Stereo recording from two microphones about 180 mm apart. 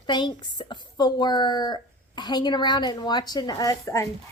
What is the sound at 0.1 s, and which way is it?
Speech, 25° left (ahead or behind).